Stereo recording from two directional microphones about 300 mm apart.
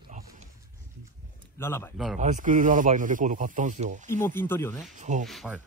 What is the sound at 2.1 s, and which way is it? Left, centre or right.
Speech, right.